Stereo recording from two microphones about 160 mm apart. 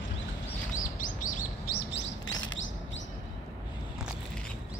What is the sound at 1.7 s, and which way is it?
Chirp, 85° left.